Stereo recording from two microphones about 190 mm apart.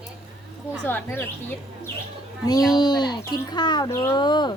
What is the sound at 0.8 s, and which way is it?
Speech, 10° left (ahead or behind).